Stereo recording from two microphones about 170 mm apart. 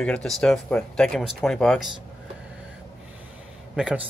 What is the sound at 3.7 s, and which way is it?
Speech, 5° right (ahead or behind).